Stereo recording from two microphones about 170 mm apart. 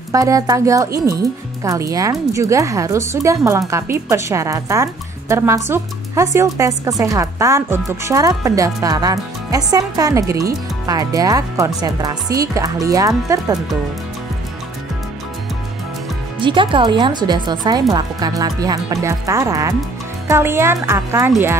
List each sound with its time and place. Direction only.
0.1 s speech: 20° right (ahead or behind)
16.3 s speech: 30° right (ahead or behind)